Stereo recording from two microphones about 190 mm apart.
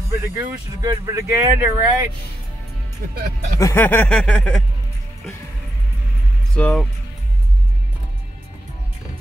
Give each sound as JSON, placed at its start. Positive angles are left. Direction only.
{"t": 0.2, "sound": "speech", "side_deg": -15}
{"t": 3.0, "sound": "speech", "side_deg": -50}
{"t": 3.5, "sound": "a sound", "side_deg": 15}
{"t": 6.5, "sound": "speech", "side_deg": 5}